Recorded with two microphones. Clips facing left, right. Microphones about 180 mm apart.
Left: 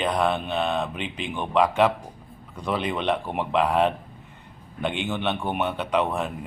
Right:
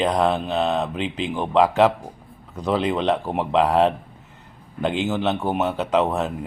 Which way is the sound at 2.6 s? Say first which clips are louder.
Right 5 dB; 30° right (ahead or behind).